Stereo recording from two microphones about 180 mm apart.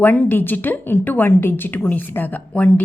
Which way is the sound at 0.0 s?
10° left (ahead or behind).